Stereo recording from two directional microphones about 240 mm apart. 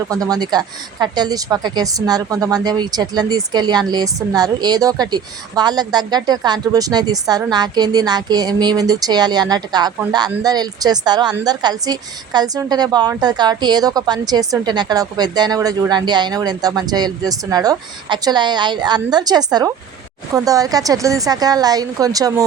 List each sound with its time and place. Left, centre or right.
0.1 s speech: centre